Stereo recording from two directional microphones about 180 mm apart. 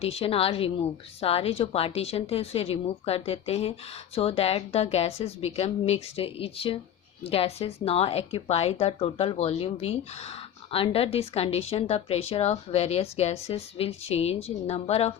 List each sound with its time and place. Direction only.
0.0 s a woman's voice: 35° left (ahead or behind)